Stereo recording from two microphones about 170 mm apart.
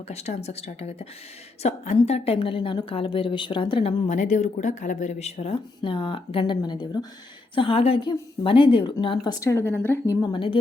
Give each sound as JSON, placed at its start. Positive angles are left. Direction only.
{"t": 0.1, "sound": "a woman's voice", "side_deg": 40}
{"t": 10.2, "sound": "speech", "side_deg": 30}